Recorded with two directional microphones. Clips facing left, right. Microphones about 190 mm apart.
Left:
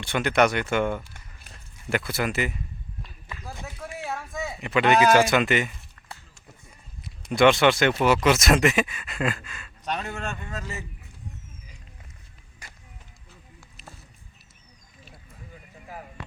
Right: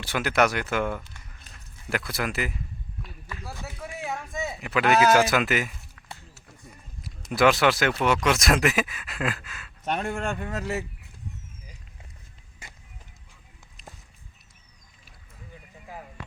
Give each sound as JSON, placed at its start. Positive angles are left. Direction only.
{"t": 0.0, "sound": "speech", "side_deg": -5}
{"t": 3.4, "sound": "run", "side_deg": 20}
{"t": 4.6, "sound": "speech", "side_deg": 0}
{"t": 7.0, "sound": "speech", "side_deg": -5}
{"t": 9.9, "sound": "speech", "side_deg": -50}